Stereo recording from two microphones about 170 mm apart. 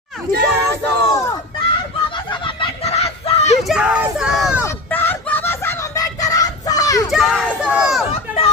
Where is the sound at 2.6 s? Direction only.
35° left (ahead or behind).